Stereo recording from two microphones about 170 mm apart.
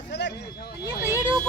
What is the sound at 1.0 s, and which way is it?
Vehicle, 15° right (ahead or behind).